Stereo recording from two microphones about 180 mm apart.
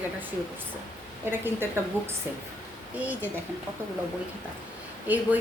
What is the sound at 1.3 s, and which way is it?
Speech, 15° right (ahead or behind).